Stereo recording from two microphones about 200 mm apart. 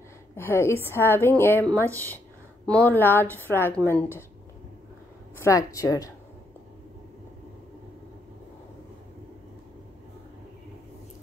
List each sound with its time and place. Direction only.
0.4 s a woman's voice: 10° left (ahead or behind)
5.4 s a woman's voice: 15° left (ahead or behind)